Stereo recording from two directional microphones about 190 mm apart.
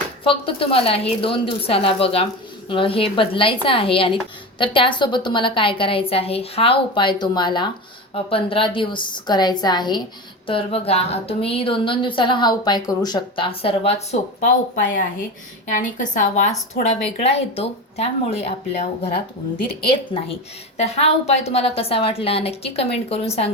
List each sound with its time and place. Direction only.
0.3 s speech: 30° left (ahead or behind)
15.7 s a woman's voice: 40° left (ahead or behind)